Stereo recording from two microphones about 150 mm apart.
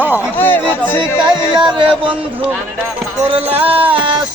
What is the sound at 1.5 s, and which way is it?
Music, 30° right (ahead or behind).